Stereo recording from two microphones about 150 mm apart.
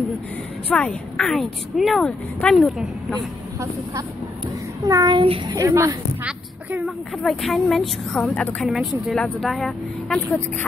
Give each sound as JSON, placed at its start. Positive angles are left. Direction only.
{"t": 0.7, "sound": "speech", "side_deg": 5}
{"t": 4.8, "sound": "a child's voice", "side_deg": -25}
{"t": 5.5, "sound": "a child's voice", "side_deg": -20}
{"t": 7.2, "sound": "speech", "side_deg": 0}